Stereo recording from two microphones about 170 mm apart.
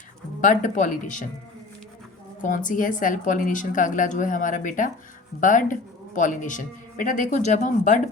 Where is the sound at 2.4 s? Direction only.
50° left (ahead or behind).